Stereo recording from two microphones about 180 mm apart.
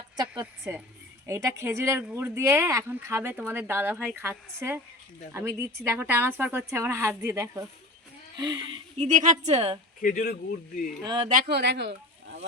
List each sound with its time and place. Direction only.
0.3 s speech: 10° right (ahead or behind)
9.0 s a woman's voice: 45° right (ahead or behind)
9.6 s speech: 30° right (ahead or behind)
10.0 s speech: 50° left (ahead or behind)
11.0 s speech: 25° right (ahead or behind)
11.3 s speech: 55° right (ahead or behind)